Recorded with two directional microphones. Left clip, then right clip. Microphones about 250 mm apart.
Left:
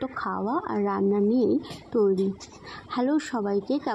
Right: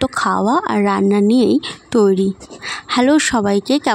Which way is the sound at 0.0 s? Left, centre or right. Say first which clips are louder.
Right 13 dB; right.